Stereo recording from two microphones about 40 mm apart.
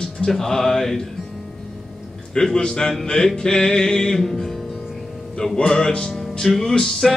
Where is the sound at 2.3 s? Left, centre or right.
Centre.